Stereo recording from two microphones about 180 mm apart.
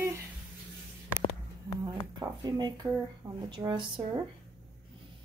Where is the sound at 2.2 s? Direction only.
25° right (ahead or behind).